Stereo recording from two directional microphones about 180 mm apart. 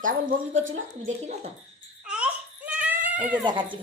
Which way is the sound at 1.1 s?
40° right (ahead or behind).